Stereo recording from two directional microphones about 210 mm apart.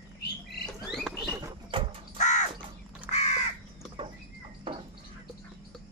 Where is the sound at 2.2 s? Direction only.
35° left (ahead or behind).